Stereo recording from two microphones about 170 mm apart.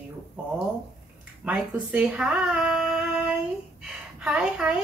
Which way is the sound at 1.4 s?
5° right (ahead or behind).